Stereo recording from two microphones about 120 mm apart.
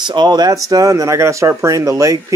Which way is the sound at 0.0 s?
40° right (ahead or behind).